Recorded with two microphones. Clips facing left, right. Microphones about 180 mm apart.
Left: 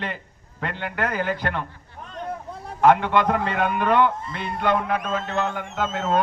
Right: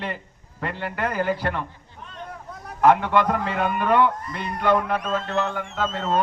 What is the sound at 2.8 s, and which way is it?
A man's voice, 5° right (ahead or behind).